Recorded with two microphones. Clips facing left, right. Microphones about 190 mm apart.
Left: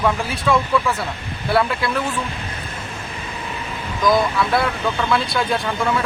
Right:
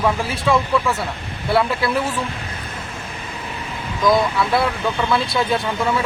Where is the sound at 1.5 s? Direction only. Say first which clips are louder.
Right 1 dB; 5° right (ahead or behind).